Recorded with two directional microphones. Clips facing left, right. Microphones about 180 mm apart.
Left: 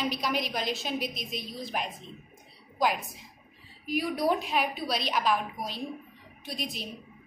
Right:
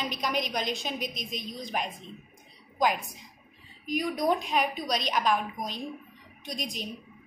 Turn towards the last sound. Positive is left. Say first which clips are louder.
# right 1 dB
turn(degrees=0)  # may be behind; listen again after turning